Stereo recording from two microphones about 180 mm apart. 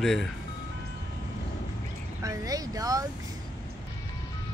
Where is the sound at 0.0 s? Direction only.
Centre (ahead or behind).